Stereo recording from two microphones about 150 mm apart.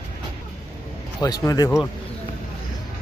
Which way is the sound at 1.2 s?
25° left (ahead or behind).